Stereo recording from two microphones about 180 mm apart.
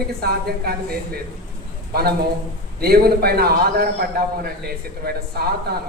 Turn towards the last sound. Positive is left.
turn(degrees=-60)  # may be behind; listen again after turning